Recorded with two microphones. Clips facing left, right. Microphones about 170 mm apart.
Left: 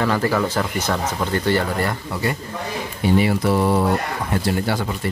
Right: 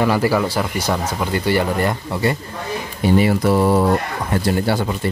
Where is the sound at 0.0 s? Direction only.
10° right (ahead or behind).